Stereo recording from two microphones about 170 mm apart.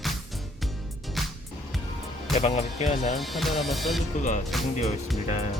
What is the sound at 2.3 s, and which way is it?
Speech, 40° left (ahead or behind).